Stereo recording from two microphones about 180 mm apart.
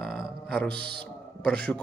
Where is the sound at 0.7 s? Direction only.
65° right (ahead or behind).